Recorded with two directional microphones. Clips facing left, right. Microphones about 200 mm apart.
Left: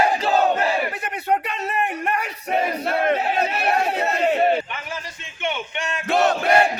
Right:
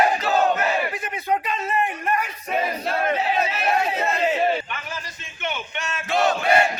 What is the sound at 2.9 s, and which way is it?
Chatter, 60° left (ahead or behind).